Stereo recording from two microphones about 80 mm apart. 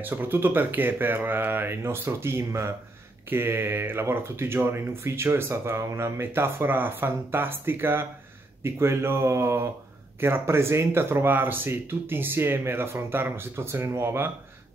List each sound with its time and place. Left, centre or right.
0.0 s speech: right